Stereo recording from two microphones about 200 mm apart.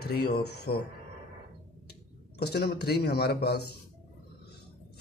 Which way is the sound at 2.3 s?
55° left (ahead or behind).